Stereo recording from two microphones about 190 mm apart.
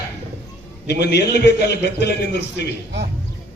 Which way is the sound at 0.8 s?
60° left (ahead or behind).